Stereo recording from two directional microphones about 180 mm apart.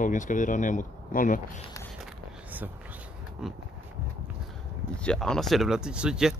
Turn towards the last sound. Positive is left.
turn(degrees=-5)  # may be behind; listen again after turning